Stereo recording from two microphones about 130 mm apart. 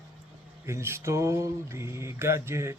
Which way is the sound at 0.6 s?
20° right (ahead or behind).